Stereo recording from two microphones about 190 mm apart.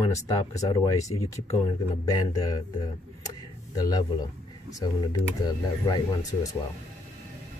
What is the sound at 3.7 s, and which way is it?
Speech, 20° left (ahead or behind).